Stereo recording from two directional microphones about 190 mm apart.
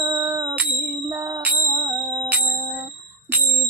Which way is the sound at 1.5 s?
15° right (ahead or behind).